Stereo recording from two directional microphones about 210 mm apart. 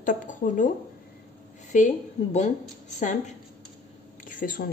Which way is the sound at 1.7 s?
35° left (ahead or behind).